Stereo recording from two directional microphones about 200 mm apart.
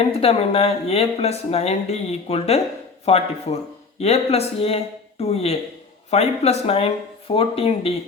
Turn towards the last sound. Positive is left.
turn(degrees=30)  # may be behind; listen again after turning